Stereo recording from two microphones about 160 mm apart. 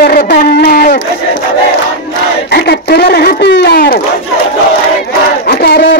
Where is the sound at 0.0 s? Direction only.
80° left; by 1.0 s 65° left (ahead or behind).